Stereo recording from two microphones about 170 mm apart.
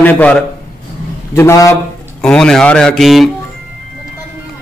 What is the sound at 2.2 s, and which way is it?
A man's voice, 5° left (ahead or behind).